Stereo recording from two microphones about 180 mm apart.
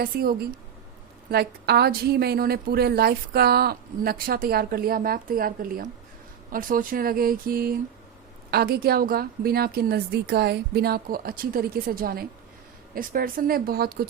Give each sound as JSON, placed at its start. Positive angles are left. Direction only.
{"t": 0.0, "sound": "a woman's voice", "side_deg": -60}